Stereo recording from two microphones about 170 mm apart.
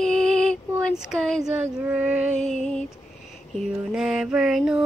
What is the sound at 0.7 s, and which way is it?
Speech, 5° right (ahead or behind).